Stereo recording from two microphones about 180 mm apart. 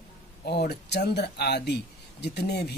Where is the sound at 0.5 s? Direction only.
65° left (ahead or behind).